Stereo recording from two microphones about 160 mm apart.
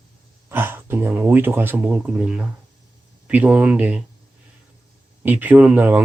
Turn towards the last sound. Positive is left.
turn(degrees=-10)  # may be behind; listen again after turning